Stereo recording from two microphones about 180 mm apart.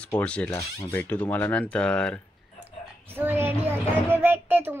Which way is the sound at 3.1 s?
10° right (ahead or behind).